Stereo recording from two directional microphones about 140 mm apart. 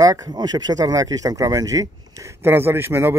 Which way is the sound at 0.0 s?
25° right (ahead or behind).